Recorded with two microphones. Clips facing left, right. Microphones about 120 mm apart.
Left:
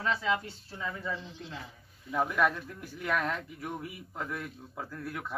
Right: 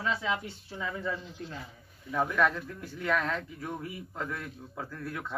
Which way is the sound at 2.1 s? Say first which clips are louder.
Right 1 dB; 10° left (ahead or behind).